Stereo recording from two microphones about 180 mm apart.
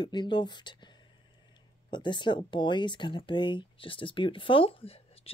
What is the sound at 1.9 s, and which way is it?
Speech, 25° left (ahead or behind).